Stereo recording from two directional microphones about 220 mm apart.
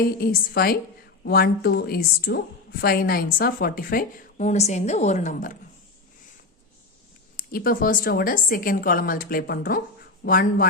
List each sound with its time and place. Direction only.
0.2 s a woman's voice: 45° left (ahead or behind)
7.3 s a woman's voice: 40° left (ahead or behind)